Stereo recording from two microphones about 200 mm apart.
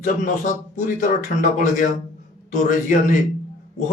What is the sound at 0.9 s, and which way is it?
Speech, 40° left (ahead or behind).